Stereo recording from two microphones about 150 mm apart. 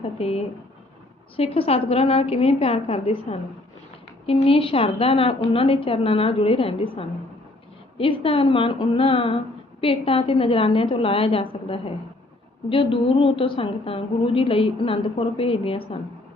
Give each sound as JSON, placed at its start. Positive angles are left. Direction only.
{"t": 0.0, "sound": "a woman's voice", "side_deg": 40}